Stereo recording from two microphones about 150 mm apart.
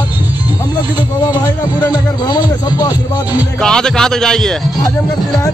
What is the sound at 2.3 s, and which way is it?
Speech, 25° left (ahead or behind).